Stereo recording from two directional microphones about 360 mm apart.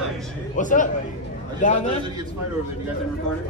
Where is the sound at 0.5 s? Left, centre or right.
Left.